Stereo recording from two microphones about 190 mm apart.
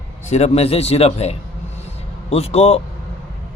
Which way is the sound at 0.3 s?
35° left (ahead or behind).